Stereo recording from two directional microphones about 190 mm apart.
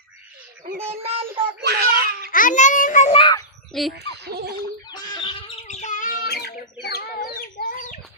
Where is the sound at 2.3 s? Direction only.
45° left (ahead or behind); by 3.4 s 25° left (ahead or behind).